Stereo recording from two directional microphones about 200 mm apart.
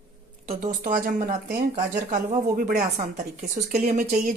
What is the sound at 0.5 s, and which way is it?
Speech, 40° right (ahead or behind).